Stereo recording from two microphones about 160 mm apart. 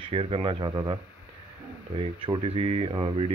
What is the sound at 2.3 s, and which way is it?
Speech, 40° right (ahead or behind).